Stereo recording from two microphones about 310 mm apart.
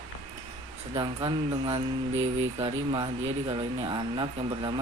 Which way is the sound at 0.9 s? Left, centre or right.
Centre.